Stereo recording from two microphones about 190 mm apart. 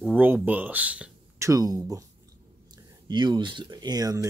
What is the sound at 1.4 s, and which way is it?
Speech, 20° right (ahead or behind).